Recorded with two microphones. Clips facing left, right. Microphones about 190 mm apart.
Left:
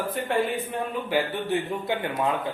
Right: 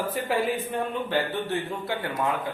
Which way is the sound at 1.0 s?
10° left (ahead or behind).